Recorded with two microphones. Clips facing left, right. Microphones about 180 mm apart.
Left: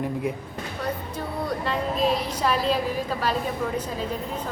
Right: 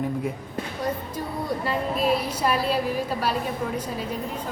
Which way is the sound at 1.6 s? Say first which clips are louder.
Even; 10° right (ahead or behind).